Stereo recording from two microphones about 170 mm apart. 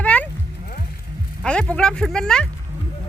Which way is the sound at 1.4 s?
5° left (ahead or behind).